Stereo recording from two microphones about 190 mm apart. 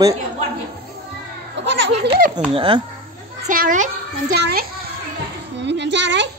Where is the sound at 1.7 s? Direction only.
70° right (ahead or behind).